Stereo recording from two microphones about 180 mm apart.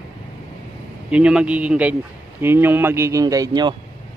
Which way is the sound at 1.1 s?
5° right (ahead or behind).